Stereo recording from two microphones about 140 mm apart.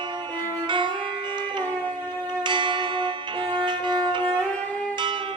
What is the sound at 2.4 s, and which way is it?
Music, 35° right (ahead or behind).